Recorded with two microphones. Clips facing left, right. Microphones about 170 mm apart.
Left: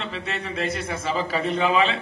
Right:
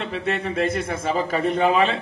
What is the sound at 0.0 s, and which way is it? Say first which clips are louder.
A man's voice: right 5 dB; 55° right (ahead or behind).